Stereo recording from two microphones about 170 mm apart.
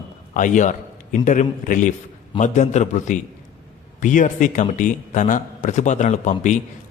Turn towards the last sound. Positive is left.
turn(degrees=45)  # may be behind; listen again after turning